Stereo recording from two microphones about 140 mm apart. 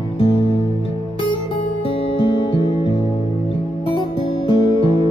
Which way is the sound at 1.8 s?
40° left (ahead or behind).